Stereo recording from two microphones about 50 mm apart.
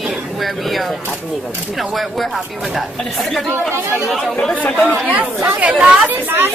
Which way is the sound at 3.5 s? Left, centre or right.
Right.